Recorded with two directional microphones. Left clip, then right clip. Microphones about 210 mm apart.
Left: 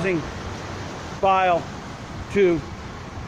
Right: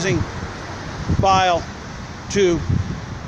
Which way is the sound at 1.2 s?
15° right (ahead or behind).